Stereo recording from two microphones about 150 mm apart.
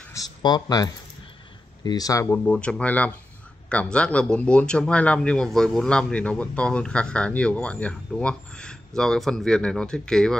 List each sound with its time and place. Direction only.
0.1 s speech: 25° left (ahead or behind); by 10.3 s 5° left (ahead or behind)